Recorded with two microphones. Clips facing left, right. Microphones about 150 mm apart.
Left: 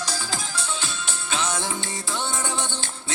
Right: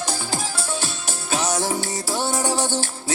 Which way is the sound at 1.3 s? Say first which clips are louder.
Right 5 dB; 40° right (ahead or behind).